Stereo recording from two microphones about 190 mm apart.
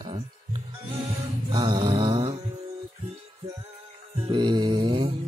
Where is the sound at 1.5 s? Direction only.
25° right (ahead or behind).